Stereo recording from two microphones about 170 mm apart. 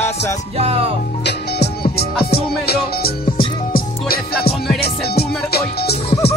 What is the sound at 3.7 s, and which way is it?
Music, 60° left (ahead or behind).